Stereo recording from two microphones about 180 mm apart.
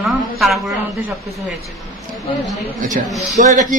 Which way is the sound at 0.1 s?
Centre (ahead or behind).